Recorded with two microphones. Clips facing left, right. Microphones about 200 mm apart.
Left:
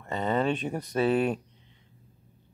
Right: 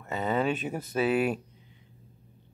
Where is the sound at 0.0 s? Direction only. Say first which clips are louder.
Left 1 dB; 5° right (ahead or behind).